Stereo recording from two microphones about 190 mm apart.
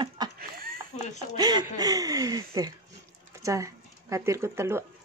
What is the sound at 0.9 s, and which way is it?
Speech, 40° left (ahead or behind).